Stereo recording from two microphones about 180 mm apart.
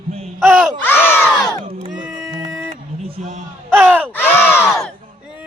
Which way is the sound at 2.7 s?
30° right (ahead or behind).